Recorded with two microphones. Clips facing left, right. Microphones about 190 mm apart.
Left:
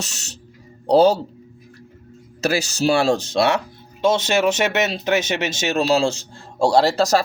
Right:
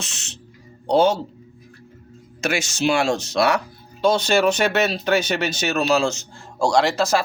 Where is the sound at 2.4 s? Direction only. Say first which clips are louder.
Left 2 dB; 35° left (ahead or behind).